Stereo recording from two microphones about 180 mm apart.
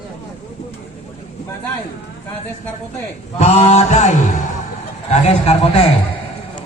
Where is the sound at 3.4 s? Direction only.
35° left (ahead or behind).